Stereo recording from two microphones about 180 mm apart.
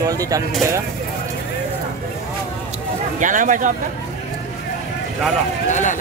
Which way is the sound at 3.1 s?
45° right (ahead or behind).